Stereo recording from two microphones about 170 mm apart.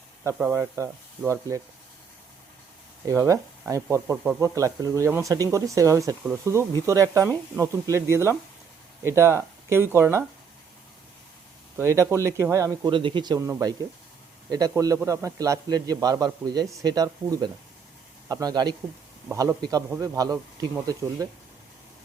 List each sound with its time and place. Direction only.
0.3 s speech: 10° right (ahead or behind)
3.1 s a man's voice: 20° right (ahead or behind)
11.8 s speech: 15° right (ahead or behind)
12.9 s a man's voice: 30° right (ahead or behind)